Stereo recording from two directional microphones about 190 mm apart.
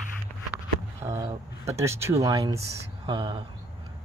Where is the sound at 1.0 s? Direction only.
15° right (ahead or behind).